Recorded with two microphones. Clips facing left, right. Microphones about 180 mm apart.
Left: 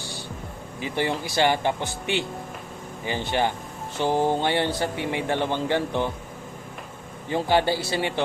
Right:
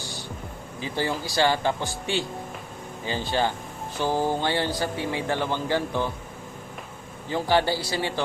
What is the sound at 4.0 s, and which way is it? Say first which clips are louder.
Speech: left 2 dB; 20° left (ahead or behind).